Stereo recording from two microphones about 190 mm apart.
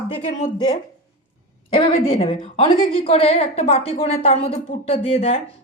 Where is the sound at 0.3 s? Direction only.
40° left (ahead or behind).